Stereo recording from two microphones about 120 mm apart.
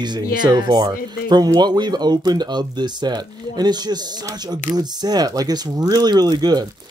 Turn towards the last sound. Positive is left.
turn(degrees=-35)  # may be behind; listen again after turning